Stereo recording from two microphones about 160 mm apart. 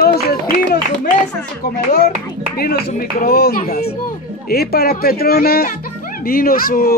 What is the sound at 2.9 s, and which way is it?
Speech, 60° left (ahead or behind).